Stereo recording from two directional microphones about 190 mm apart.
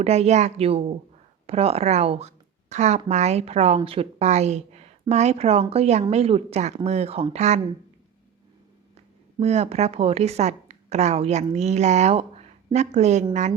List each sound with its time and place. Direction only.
0.0 s a woman's voice: 35° right (ahead or behind)
9.4 s a woman's voice: 35° right (ahead or behind)